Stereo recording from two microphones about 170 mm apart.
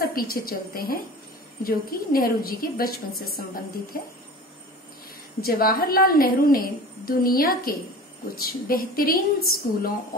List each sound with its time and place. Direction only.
0.0 s a woman's voice: 60° left (ahead or behind)
5.4 s a woman's voice: 60° left (ahead or behind)